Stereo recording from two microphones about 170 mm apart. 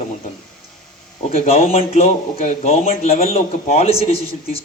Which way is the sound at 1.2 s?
40° left (ahead or behind).